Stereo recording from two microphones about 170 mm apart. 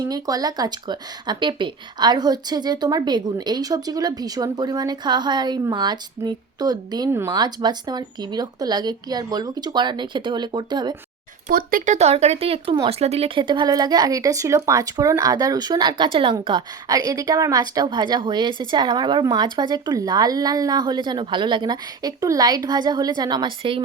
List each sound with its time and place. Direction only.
0.0 s speech: 20° right (ahead or behind)
11.4 s speech: 55° right (ahead or behind)
11.9 s speech: 40° right (ahead or behind)